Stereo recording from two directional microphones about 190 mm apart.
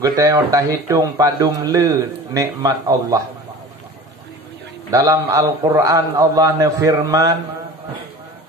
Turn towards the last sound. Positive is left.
turn(degrees=-20)  # may be behind; listen again after turning